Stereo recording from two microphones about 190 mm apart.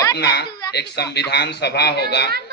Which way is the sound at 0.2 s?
55° left (ahead or behind).